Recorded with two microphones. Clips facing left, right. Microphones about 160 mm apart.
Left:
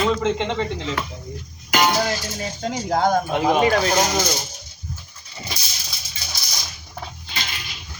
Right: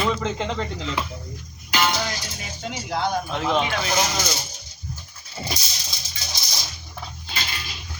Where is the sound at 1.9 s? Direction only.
40° left (ahead or behind).